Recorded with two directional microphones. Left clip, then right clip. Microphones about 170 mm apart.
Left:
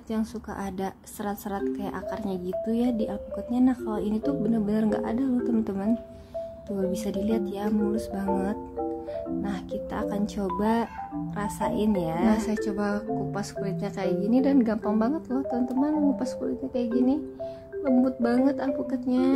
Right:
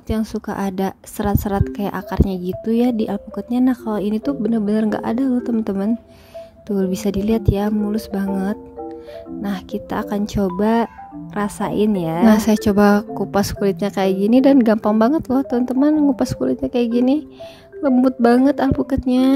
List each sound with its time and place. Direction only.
0.1 s a woman's voice: 40° right (ahead or behind)